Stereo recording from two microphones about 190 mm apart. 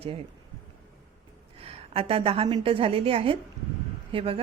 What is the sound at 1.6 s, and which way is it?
A woman's voice, 30° right (ahead or behind).